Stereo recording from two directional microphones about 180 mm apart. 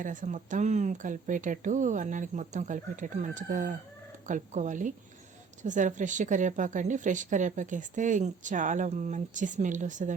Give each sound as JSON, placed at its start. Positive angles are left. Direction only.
{"t": 0.0, "sound": "speech", "side_deg": -45}